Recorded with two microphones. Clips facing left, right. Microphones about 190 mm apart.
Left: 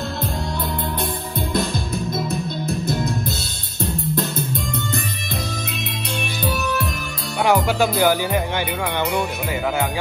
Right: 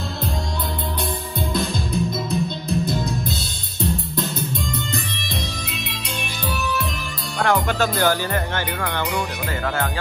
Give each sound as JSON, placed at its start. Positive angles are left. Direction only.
{"t": 4.1, "sound": "music", "side_deg": 55}
{"t": 7.4, "sound": "music", "side_deg": 10}